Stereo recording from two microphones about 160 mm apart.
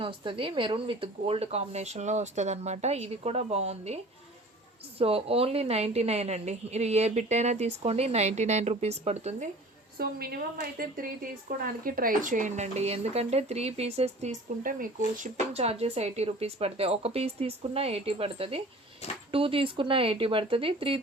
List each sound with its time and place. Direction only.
0.0 s speech: 30° right (ahead or behind)
4.9 s speech: 35° right (ahead or behind)
10.0 s speech: 70° right (ahead or behind)
15.5 s speech: 40° right (ahead or behind)